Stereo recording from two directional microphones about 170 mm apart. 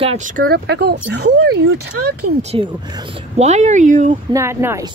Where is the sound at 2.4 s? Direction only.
35° right (ahead or behind).